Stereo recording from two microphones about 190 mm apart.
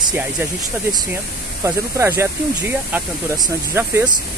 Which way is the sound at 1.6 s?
15° right (ahead or behind).